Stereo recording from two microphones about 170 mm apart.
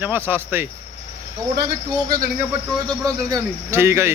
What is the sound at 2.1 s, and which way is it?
Speech, 60° right (ahead or behind).